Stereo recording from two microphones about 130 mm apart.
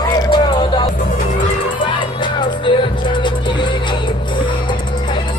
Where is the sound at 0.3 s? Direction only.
35° left (ahead or behind).